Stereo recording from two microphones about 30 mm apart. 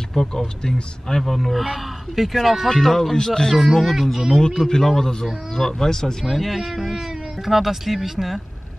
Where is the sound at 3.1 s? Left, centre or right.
Left.